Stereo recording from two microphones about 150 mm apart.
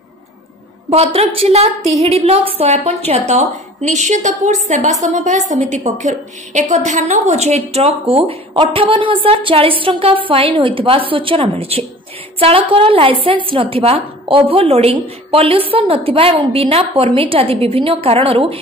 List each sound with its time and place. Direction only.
0.8 s a woman's voice: 45° right (ahead or behind)